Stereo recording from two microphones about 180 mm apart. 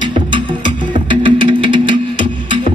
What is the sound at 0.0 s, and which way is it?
Music, 25° right (ahead or behind).